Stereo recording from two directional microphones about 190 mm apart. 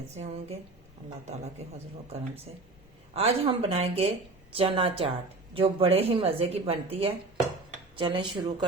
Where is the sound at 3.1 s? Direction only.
30° right (ahead or behind).